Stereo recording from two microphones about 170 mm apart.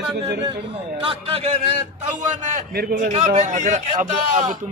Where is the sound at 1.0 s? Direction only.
35° right (ahead or behind).